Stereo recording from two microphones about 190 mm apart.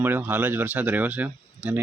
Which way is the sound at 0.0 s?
10° right (ahead or behind).